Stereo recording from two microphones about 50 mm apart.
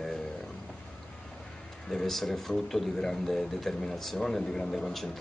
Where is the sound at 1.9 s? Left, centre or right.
Centre.